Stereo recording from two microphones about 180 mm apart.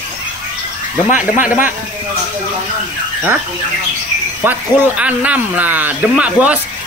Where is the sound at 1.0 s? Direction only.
45° left (ahead or behind).